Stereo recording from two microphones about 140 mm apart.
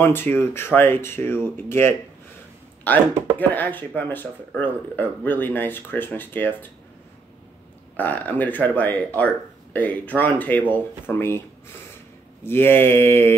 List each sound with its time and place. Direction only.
0.0 s speech: 15° left (ahead or behind)
7.9 s speech: 10° left (ahead or behind)
12.4 s speech: 15° left (ahead or behind)